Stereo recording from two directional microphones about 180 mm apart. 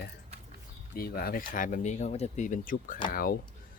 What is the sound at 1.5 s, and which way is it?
Speech, 45° left (ahead or behind).